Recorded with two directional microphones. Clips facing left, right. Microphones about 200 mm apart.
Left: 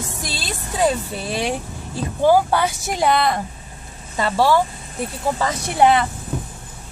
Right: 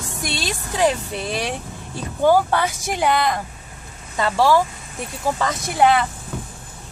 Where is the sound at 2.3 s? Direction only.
10° left (ahead or behind).